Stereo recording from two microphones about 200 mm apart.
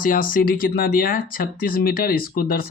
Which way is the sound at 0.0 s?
45° left (ahead or behind).